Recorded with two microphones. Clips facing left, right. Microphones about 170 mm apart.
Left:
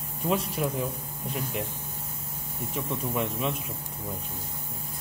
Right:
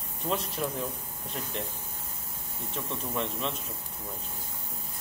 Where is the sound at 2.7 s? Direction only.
10° left (ahead or behind).